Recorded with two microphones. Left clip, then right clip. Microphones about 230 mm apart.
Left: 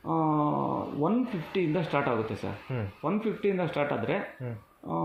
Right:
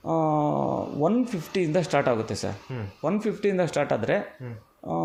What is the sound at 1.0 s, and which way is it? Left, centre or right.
Speech, right.